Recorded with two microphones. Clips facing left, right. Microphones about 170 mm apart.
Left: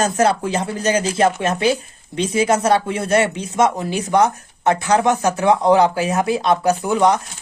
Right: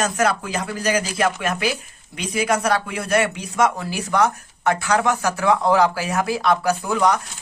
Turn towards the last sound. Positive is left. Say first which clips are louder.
# left 3 dB
turn(degrees=25)  # may be behind; listen again after turning